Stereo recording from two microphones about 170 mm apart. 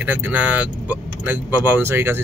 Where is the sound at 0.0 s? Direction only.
10° right (ahead or behind).